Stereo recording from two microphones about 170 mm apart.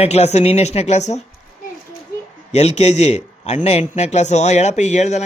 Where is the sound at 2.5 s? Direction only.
40° left (ahead or behind).